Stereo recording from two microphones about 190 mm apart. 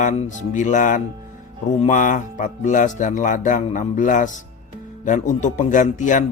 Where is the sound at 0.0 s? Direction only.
40° left (ahead or behind).